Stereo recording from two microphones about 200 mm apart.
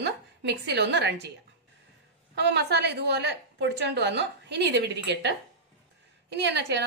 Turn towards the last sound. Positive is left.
turn(degrees=-60)  # may be behind; listen again after turning